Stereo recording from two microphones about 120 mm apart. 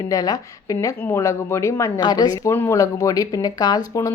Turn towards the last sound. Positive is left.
turn(degrees=30)  # may be behind; listen again after turning